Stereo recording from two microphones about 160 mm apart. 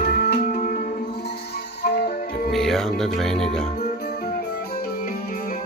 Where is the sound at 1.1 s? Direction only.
85° left.